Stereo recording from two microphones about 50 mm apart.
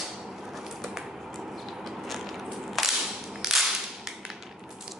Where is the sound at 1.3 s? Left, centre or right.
Centre.